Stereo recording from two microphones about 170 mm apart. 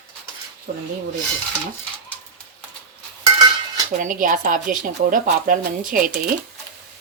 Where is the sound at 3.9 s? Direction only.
50° right (ahead or behind).